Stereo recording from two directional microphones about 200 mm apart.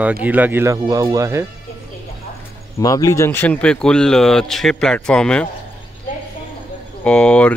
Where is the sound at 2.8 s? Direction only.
15° left (ahead or behind).